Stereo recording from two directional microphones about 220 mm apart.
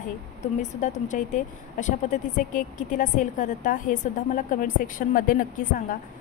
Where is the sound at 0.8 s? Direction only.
35° left (ahead or behind).